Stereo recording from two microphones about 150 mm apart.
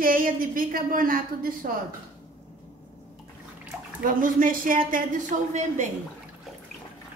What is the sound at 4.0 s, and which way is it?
A woman's voice, 65° right (ahead or behind).